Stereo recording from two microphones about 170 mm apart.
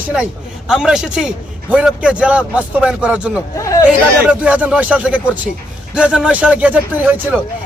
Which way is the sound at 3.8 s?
10° right (ahead or behind).